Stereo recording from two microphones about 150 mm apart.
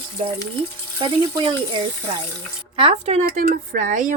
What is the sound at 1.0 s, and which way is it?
Speech, 35° right (ahead or behind).